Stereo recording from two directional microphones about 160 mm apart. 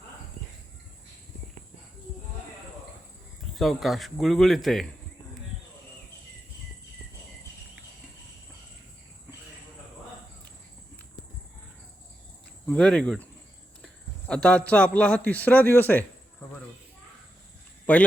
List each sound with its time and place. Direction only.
3.5 s speech: centre (ahead or behind)
12.6 s a man's voice: 5° left (ahead or behind)
17.9 s speech: 10° left (ahead or behind)